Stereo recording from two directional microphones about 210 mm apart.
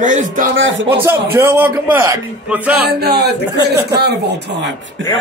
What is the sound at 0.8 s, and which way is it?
A man's voice, 10° right (ahead or behind).